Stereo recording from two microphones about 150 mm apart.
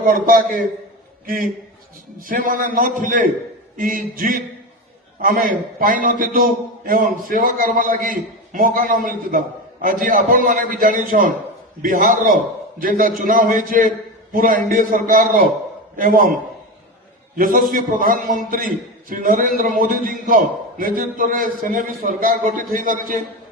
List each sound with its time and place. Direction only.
0.0 s a man's voice: 70° right (ahead or behind)
2.1 s a man's voice: 70° right (ahead or behind)